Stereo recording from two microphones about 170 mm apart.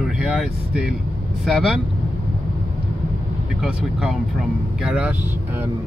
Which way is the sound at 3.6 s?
5° right (ahead or behind).